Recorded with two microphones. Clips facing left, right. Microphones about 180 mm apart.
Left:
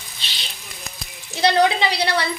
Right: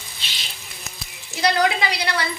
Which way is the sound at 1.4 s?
30° left (ahead or behind).